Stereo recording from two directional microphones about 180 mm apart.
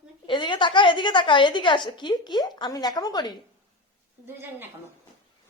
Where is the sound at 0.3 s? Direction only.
25° left (ahead or behind).